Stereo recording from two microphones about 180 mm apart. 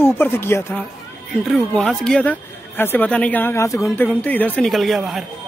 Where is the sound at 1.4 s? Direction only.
Centre (ahead or behind).